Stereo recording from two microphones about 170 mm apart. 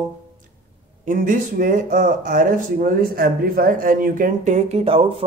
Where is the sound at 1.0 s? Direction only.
55° right (ahead or behind).